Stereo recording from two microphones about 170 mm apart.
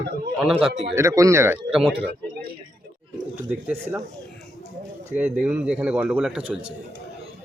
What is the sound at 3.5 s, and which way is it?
Speech, 10° right (ahead or behind).